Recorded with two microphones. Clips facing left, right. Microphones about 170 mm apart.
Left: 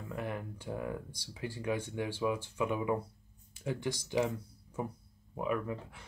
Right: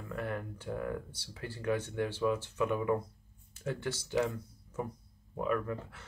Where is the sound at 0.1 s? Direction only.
15° left (ahead or behind).